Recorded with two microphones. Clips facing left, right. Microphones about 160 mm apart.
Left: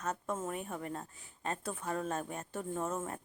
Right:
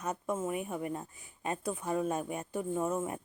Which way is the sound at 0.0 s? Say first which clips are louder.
Right 3 dB; 15° right (ahead or behind).